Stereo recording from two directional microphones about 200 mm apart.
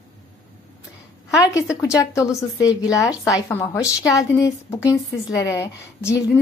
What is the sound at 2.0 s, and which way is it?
A woman's voice, 15° left (ahead or behind).